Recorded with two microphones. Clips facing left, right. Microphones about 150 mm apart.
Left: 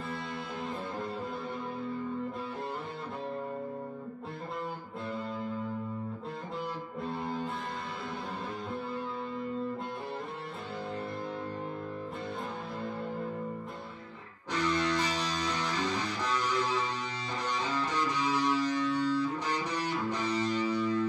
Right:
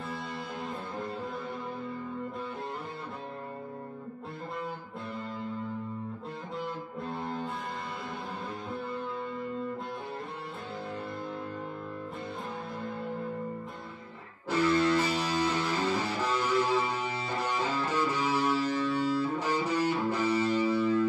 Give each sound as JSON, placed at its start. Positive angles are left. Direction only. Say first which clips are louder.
{"t": 7.0, "sound": "music", "louder": "left 1 dB", "side_deg": 0}
{"t": 14.5, "sound": "music", "louder": "right 5 dB", "side_deg": -10}